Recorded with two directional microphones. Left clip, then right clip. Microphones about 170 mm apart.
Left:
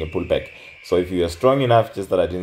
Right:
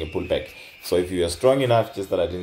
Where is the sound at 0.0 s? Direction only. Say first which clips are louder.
Left 3 dB; 20° left (ahead or behind).